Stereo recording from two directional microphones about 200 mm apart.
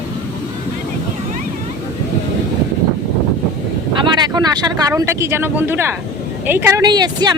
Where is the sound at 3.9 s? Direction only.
20° right (ahead or behind).